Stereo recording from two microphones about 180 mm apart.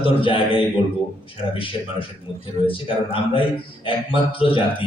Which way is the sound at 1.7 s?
25° left (ahead or behind).